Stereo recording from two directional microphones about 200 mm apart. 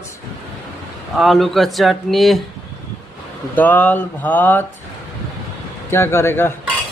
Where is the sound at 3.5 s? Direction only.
10° left (ahead or behind).